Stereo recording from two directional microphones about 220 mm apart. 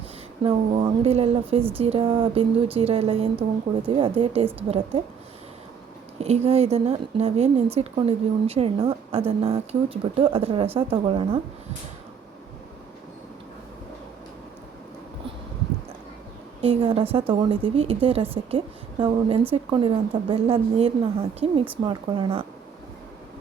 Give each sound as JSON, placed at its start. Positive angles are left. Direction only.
{"t": 0.4, "sound": "a woman's voice", "side_deg": -25}
{"t": 6.1, "sound": "a woman's voice", "side_deg": -30}
{"t": 16.6, "sound": "a woman's voice", "side_deg": -25}